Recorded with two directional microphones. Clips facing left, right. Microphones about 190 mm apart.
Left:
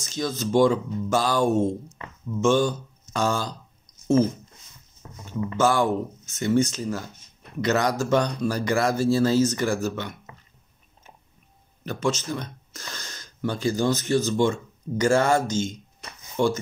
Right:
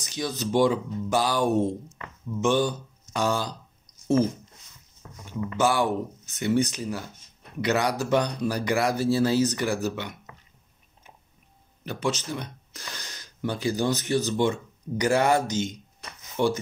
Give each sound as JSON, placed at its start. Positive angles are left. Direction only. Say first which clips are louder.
{"t": 0.0, "sound": "speech", "louder": "left 2 dB", "side_deg": -15}
{"t": 5.0, "sound": "a sound", "louder": "left 2 dB", "side_deg": 25}
{"t": 5.6, "sound": "speech", "louder": "left 2 dB", "side_deg": -15}
{"t": 11.8, "sound": "speech", "louder": "left 2 dB", "side_deg": -15}